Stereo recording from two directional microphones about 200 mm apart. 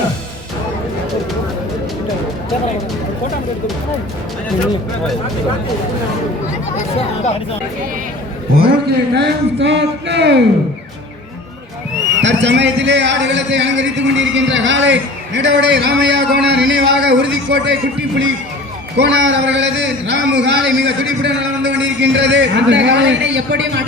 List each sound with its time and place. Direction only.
8.6 s a man's voice: 55° right (ahead or behind)
12.2 s a man's voice: 60° right (ahead or behind)
18.9 s a man's voice: 60° right (ahead or behind)